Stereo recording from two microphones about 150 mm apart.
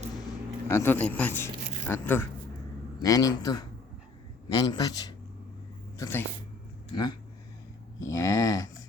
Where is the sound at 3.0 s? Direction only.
25° left (ahead or behind).